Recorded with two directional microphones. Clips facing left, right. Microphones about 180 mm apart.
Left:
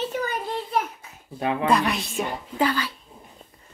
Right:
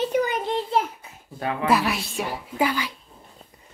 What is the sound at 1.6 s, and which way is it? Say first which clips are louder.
A woman's voice: right 1 dB; 5° right (ahead or behind).